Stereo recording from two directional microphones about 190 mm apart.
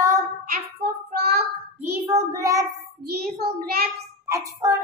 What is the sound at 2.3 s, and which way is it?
Child singing, 20° right (ahead or behind).